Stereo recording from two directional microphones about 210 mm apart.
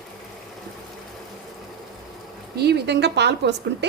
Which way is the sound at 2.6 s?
50° right (ahead or behind).